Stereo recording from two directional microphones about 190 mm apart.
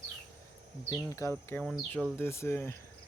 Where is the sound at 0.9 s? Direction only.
15° left (ahead or behind).